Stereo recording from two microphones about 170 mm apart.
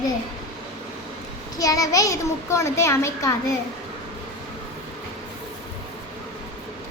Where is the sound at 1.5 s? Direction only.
20° left (ahead or behind).